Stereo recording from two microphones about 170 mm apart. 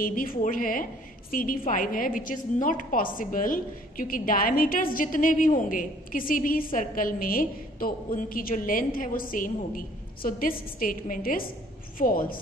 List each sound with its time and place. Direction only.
0.0 s a woman's voice: 55° left (ahead or behind)